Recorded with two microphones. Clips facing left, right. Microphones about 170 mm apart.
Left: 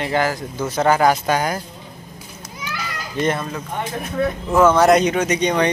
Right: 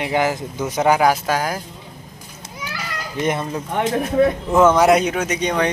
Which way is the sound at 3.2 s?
15° right (ahead or behind).